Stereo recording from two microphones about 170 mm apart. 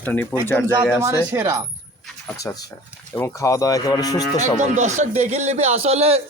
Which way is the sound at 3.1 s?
15° left (ahead or behind).